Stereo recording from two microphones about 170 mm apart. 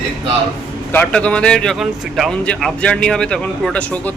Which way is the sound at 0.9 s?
10° left (ahead or behind).